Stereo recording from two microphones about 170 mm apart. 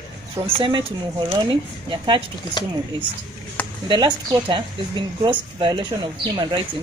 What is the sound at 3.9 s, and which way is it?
Speech, 25° right (ahead or behind).